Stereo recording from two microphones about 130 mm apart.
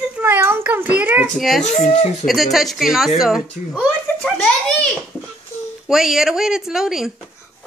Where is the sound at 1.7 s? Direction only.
55° left (ahead or behind).